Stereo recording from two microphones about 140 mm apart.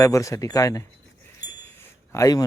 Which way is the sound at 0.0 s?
20° left (ahead or behind).